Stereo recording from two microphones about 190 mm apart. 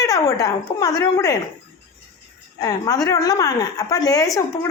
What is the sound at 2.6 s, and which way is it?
A woman's voice, 20° left (ahead or behind).